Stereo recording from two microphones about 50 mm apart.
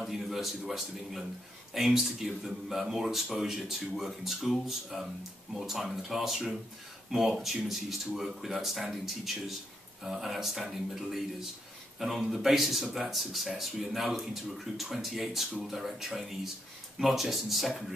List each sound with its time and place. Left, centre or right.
0.0 s speech: centre